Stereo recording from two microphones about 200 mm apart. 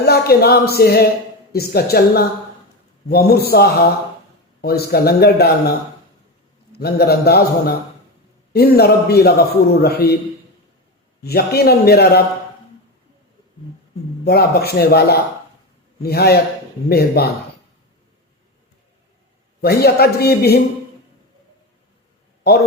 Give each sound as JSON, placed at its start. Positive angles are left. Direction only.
{"t": 0.0, "sound": "a man's voice", "side_deg": 55}
{"t": 6.7, "sound": "a man's voice", "side_deg": 50}
{"t": 8.5, "sound": "a man's voice", "side_deg": 50}
{"t": 11.2, "sound": "a man's voice", "side_deg": 50}
{"t": 14.3, "sound": "a man's voice", "side_deg": 50}
{"t": 19.6, "sound": "a man's voice", "side_deg": 50}